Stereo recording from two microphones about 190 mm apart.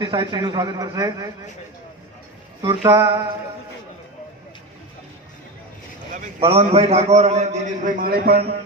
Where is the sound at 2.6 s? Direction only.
20° right (ahead or behind).